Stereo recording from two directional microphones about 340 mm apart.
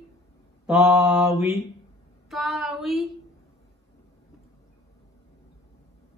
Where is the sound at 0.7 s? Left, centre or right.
Centre.